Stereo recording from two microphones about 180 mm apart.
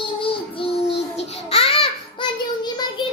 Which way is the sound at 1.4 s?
35° left (ahead or behind).